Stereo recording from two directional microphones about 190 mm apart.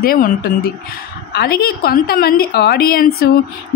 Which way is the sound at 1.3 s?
55° left (ahead or behind).